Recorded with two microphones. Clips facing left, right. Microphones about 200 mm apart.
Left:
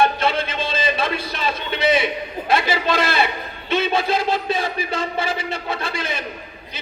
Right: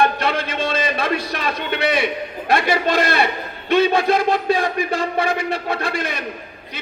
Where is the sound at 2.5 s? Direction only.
55° right (ahead or behind).